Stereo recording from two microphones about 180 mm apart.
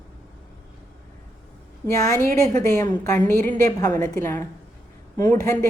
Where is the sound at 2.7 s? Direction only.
20° left (ahead or behind).